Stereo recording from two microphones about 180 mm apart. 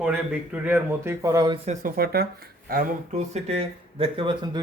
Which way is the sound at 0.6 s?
15° right (ahead or behind).